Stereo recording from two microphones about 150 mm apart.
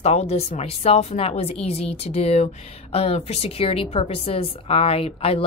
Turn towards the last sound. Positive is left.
turn(degrees=40)  # may be behind; listen again after turning